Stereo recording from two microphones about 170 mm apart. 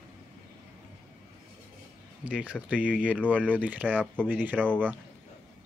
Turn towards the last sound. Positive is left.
turn(degrees=5)  # may be behind; listen again after turning